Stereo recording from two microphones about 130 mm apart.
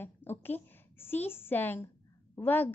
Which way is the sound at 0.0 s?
15° left (ahead or behind).